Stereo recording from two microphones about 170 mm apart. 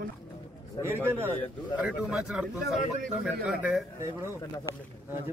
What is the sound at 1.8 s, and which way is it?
Speech, 5° right (ahead or behind).